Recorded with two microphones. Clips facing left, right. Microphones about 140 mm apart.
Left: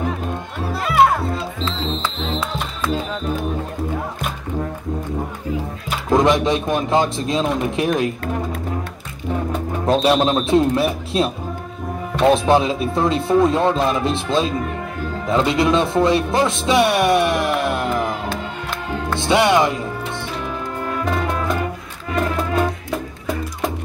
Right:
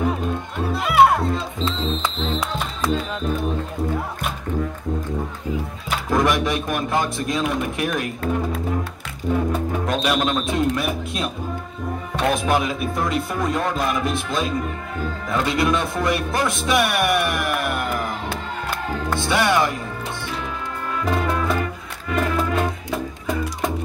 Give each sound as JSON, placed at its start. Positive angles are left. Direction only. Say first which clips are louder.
{"t": 0.8, "sound": "music", "louder": "even", "side_deg": 0}
{"t": 6.0, "sound": "speech", "louder": "left 5 dB", "side_deg": 25}
{"t": 9.8, "sound": "speech", "louder": "left 8 dB", "side_deg": 30}
{"t": 12.3, "sound": "speech", "louder": "left 6 dB", "side_deg": 25}
{"t": 19.1, "sound": "speech", "louder": "left 4 dB", "side_deg": 20}